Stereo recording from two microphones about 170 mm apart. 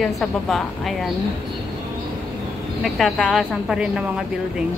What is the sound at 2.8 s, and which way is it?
A woman's voice, centre (ahead or behind).